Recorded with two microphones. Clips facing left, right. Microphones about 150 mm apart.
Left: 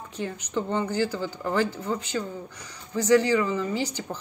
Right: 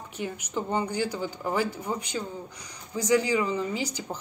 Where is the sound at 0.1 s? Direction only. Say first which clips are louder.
Left 2 dB; 10° right (ahead or behind).